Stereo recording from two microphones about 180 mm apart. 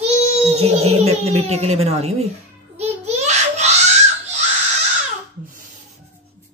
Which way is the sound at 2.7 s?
40° right (ahead or behind).